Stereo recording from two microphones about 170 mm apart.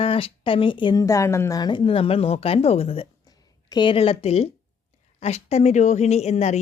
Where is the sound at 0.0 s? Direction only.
30° left (ahead or behind).